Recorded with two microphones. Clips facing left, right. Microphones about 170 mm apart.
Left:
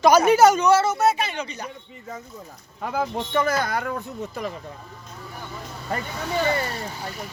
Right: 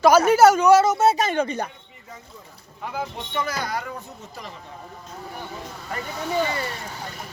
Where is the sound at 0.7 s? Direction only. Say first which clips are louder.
Right 3 dB; 20° right (ahead or behind).